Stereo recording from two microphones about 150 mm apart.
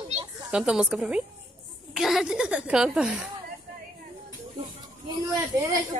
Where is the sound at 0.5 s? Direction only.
5° right (ahead or behind).